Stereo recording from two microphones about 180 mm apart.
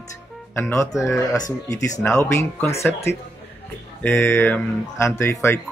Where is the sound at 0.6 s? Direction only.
10° left (ahead or behind).